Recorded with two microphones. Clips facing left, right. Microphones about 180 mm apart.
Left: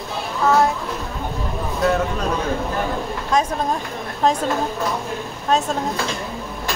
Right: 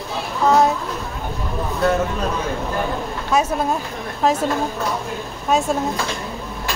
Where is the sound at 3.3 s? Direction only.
10° right (ahead or behind).